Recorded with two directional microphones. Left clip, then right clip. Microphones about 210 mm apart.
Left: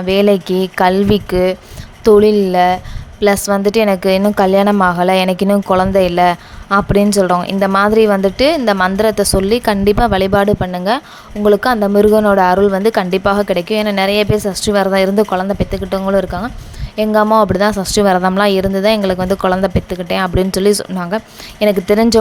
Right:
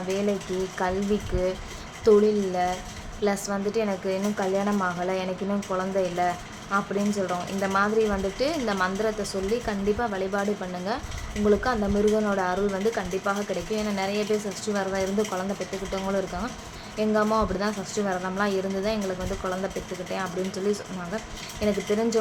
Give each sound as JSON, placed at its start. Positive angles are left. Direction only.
{"t": 0.1, "sound": "a woman's voice", "side_deg": 50}
{"t": 2.0, "sound": "a woman's voice", "side_deg": 45}